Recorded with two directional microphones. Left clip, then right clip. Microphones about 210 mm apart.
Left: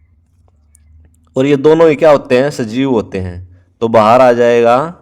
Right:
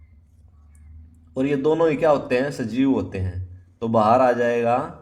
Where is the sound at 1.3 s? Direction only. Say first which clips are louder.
Left 12 dB; 45° left (ahead or behind).